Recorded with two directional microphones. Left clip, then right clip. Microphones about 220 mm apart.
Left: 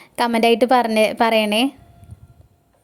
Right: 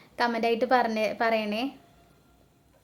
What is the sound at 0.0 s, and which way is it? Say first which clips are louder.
A woman's voice: left 9 dB; 35° left (ahead or behind).